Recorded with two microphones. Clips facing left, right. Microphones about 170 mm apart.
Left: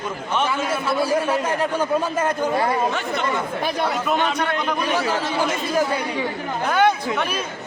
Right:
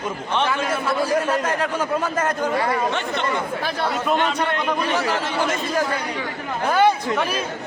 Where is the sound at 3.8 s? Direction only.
5° left (ahead or behind).